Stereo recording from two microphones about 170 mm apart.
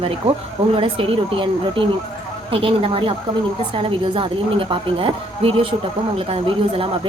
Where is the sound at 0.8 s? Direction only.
30° right (ahead or behind).